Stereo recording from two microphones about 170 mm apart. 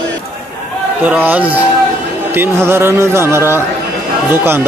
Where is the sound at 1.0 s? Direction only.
10° right (ahead or behind).